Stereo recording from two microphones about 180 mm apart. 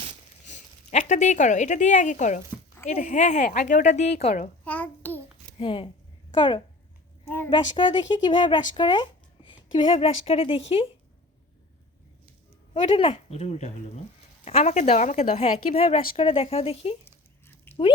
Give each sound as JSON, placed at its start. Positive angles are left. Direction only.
{"t": 0.4, "sound": "a woman's voice", "side_deg": 40}
{"t": 4.6, "sound": "a sound", "side_deg": 10}
{"t": 5.5, "sound": "a woman's voice", "side_deg": 30}
{"t": 7.3, "sound": "a woman's voice", "side_deg": 10}
{"t": 7.5, "sound": "speech", "side_deg": 25}
{"t": 12.7, "sound": "a woman's voice", "side_deg": 30}
{"t": 17.7, "sound": "a sound", "side_deg": 10}